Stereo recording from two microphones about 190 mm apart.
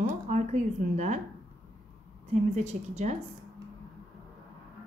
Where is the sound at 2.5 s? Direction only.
35° right (ahead or behind).